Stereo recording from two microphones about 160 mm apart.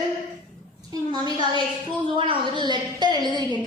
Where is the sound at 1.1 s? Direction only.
30° right (ahead or behind).